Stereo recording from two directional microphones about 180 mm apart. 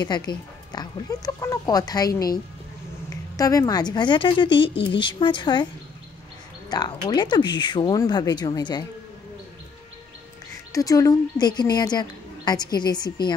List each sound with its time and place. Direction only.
0.0 s a woman's voice: 25° left (ahead or behind)
6.7 s a woman's voice: 25° left (ahead or behind)
10.7 s a woman's voice: 20° left (ahead or behind)